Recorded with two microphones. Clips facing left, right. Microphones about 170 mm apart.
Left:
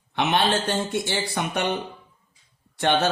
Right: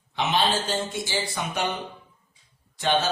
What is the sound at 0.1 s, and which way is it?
Speech, 60° left (ahead or behind).